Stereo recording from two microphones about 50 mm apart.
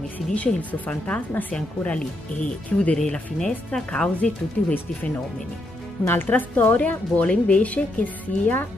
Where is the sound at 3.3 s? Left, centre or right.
Centre.